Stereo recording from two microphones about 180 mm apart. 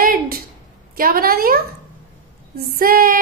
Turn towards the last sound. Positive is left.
turn(degrees=-55)  # may be behind; listen again after turning